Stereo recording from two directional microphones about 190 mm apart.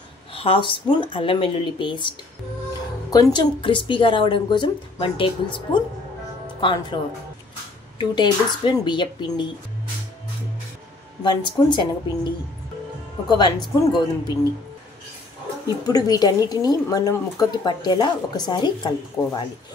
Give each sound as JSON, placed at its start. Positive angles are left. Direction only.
{"t": 0.3, "sound": "a woman's voice", "side_deg": 30}
{"t": 8.0, "sound": "a woman's voice", "side_deg": 25}
{"t": 11.2, "sound": "a woman's voice", "side_deg": 25}
{"t": 13.3, "sound": "a woman's voice", "side_deg": 20}
{"t": 15.9, "sound": "a woman's voice", "side_deg": 20}